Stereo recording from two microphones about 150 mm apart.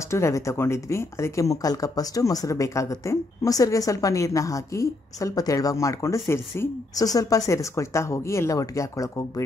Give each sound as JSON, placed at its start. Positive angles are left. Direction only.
{"t": 0.1, "sound": "speech", "side_deg": 20}